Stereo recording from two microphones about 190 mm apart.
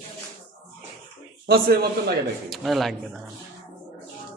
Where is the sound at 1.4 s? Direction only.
55° right (ahead or behind).